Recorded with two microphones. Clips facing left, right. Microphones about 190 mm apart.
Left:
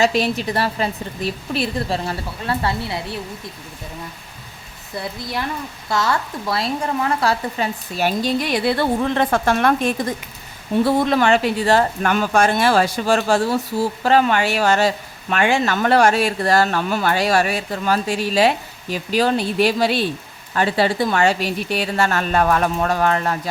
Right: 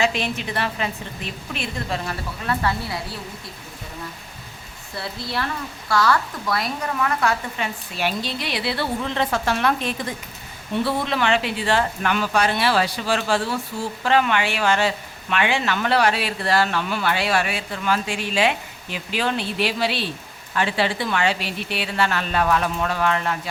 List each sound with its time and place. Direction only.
0.0 s a woman's voice: 40° left (ahead or behind)
4.9 s speech: 15° left (ahead or behind); by 23.4 s 40° left (ahead or behind)